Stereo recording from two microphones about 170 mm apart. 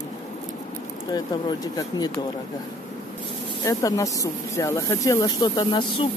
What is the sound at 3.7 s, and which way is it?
Speech, 20° left (ahead or behind).